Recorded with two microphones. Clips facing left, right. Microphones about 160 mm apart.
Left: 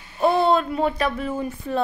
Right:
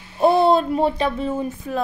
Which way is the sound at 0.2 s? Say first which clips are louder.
Right 3 dB; 35° right (ahead or behind).